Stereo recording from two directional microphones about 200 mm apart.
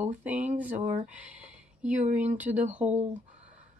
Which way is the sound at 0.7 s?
35° right (ahead or behind).